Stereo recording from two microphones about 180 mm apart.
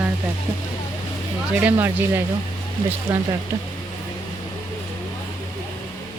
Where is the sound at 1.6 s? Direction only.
10° right (ahead or behind).